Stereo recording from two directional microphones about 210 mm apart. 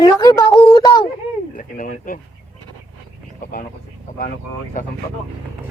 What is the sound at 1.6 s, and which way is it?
Speech, 40° left (ahead or behind).